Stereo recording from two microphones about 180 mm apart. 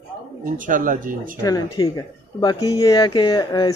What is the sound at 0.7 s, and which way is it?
Speech, 50° right (ahead or behind).